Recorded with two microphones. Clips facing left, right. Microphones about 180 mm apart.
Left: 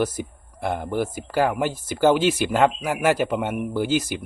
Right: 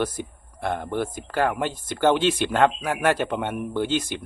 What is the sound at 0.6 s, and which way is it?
Speech, 10° left (ahead or behind).